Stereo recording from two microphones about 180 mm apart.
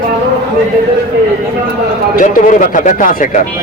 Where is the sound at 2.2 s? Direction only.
50° left (ahead or behind).